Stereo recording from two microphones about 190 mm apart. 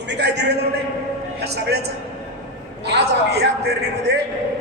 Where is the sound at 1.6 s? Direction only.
60° right (ahead or behind).